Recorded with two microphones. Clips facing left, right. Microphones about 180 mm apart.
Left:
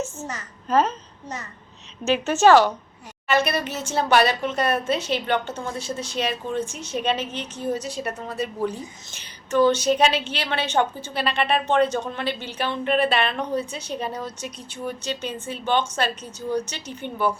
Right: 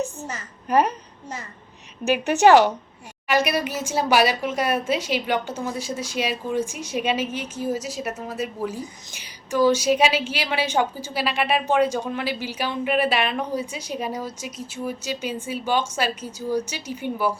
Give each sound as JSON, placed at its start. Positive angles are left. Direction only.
{"t": 0.7, "sound": "a woman's voice", "side_deg": -15}
{"t": 2.0, "sound": "a woman's voice", "side_deg": -15}